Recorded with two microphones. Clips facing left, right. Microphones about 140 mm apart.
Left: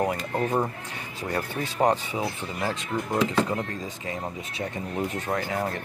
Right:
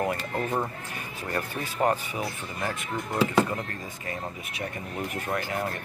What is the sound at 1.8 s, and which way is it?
Speech, 20° left (ahead or behind).